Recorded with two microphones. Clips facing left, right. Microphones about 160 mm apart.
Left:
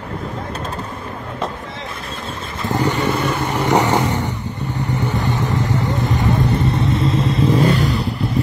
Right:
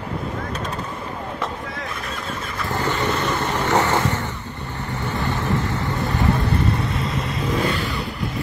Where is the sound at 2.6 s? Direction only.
15° left (ahead or behind).